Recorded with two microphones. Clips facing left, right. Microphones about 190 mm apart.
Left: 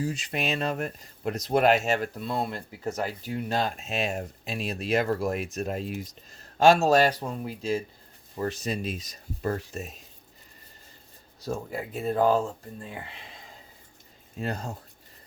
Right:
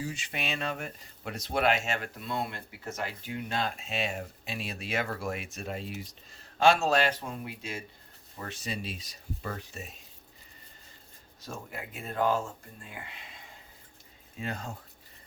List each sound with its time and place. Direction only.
0.0 s speech: 40° left (ahead or behind)
11.3 s speech: 35° left (ahead or behind)
14.3 s speech: 40° left (ahead or behind)